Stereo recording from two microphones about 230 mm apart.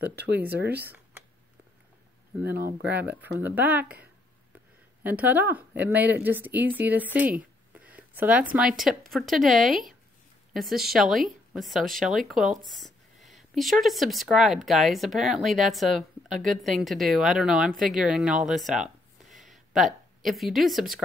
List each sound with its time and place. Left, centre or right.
0.1 s speech: right
0.7 s speech: centre
2.6 s a woman's voice: centre